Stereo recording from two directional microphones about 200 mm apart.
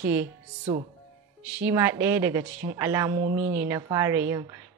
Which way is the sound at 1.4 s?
10° right (ahead or behind).